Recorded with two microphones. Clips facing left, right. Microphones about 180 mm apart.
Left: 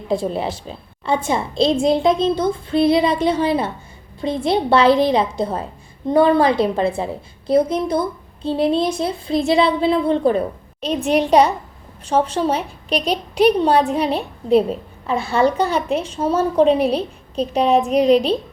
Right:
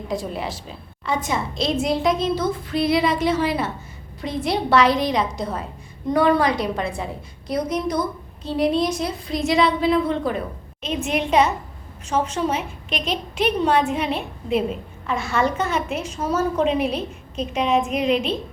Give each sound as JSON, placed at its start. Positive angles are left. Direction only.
{"t": 0.1, "sound": "a woman's voice", "side_deg": 30}